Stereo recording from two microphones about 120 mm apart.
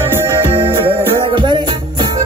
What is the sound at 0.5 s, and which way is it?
Music, 45° right (ahead or behind).